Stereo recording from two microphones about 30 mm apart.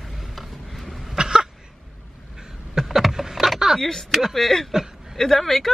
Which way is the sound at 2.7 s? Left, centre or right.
Centre.